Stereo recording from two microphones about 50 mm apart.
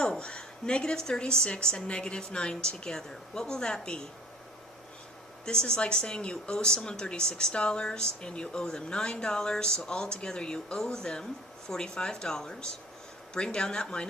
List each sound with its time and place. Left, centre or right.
0.0 s speech: centre
5.5 s speech: centre